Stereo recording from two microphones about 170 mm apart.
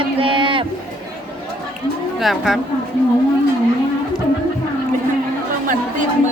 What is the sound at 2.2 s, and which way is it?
Speech, centre (ahead or behind).